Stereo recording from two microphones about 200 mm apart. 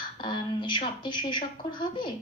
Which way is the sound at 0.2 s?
25° left (ahead or behind).